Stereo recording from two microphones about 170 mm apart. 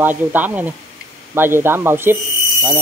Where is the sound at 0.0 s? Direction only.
10° right (ahead or behind).